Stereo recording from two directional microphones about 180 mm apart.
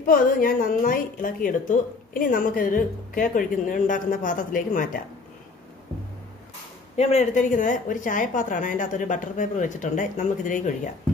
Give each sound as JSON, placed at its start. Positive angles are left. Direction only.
{"t": 0.0, "sound": "speech", "side_deg": 50}
{"t": 7.0, "sound": "speech", "side_deg": 35}